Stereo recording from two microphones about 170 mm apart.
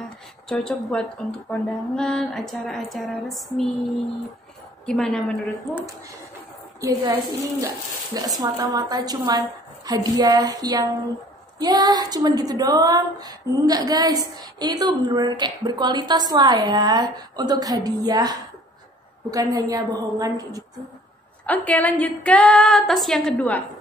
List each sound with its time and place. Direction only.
0.0 s speech: centre (ahead or behind)
4.8 s speech: 5° left (ahead or behind)
6.8 s speech: 20° right (ahead or behind)
21.5 s a woman's voice: 10° left (ahead or behind)